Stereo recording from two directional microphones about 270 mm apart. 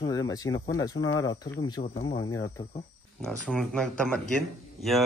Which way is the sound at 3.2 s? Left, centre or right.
Centre.